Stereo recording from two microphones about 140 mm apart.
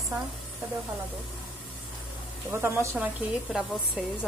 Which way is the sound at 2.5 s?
20° right (ahead or behind).